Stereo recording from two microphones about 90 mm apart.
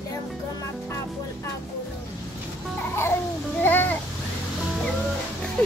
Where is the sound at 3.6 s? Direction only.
20° left (ahead or behind).